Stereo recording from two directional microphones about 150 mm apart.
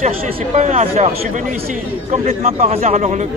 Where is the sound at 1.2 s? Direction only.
60° right (ahead or behind).